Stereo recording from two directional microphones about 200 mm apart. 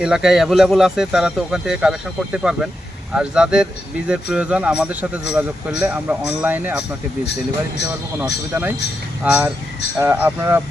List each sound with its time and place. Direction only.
0.0 s speech: 5° right (ahead or behind)
8.2 s speech: 10° right (ahead or behind)